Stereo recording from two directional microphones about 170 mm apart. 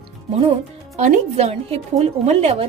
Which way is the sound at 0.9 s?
40° right (ahead or behind).